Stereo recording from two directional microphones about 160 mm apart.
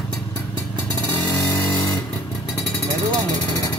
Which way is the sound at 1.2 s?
20° left (ahead or behind).